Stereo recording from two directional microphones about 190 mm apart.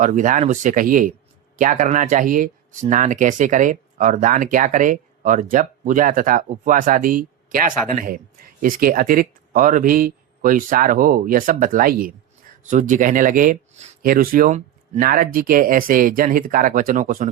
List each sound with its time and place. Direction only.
0.0 s speech: 40° right (ahead or behind)